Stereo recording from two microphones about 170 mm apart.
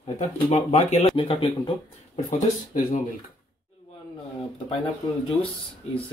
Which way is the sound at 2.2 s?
50° left (ahead or behind).